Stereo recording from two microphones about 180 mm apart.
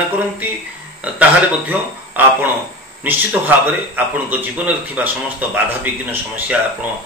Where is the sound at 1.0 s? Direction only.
5° right (ahead or behind).